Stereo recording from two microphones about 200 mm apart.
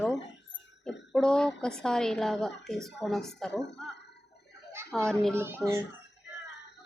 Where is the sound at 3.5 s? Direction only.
60° left (ahead or behind).